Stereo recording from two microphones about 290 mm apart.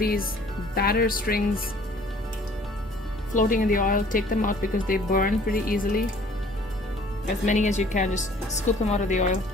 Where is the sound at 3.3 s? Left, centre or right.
Left.